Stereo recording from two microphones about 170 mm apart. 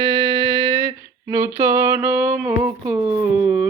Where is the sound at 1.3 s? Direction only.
20° right (ahead or behind).